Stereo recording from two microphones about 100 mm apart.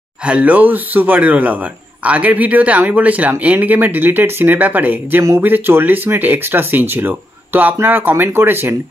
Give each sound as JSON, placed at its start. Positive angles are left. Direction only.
{"t": 0.2, "sound": "speech", "side_deg": -10}